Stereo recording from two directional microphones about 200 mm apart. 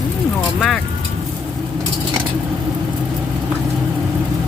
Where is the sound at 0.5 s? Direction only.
Centre (ahead or behind).